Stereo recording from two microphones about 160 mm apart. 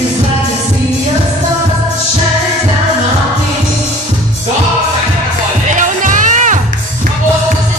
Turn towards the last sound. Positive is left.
turn(degrees=-50)  # may be behind; listen again after turning